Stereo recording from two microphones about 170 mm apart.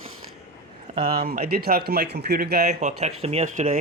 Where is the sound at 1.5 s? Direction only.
65° right (ahead or behind).